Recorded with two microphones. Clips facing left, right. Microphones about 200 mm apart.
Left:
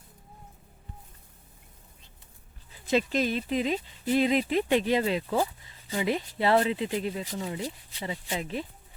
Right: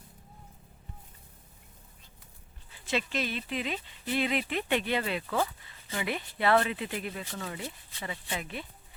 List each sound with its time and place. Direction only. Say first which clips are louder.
2.9 s speech: left 6 dB; 40° left (ahead or behind)